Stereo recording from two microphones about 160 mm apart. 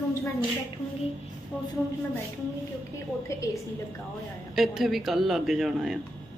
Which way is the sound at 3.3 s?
15° left (ahead or behind).